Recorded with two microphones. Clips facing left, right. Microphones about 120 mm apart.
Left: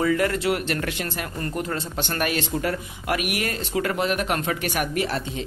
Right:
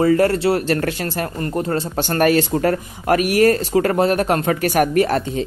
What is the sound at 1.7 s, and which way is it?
Speech, 40° right (ahead or behind).